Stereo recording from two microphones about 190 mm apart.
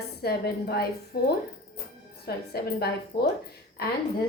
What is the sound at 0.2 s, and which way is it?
Speech, 55° left (ahead or behind).